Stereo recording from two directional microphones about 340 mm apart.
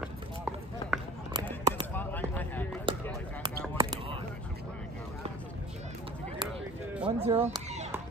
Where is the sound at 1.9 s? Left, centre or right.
Centre.